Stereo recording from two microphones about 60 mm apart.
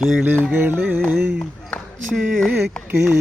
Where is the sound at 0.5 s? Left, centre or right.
Right.